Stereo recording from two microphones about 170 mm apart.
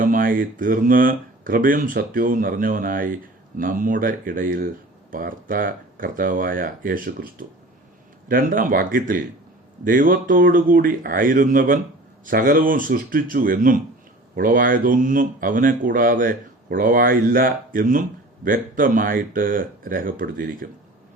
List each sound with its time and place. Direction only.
0.0 s speech: 55° right (ahead or behind)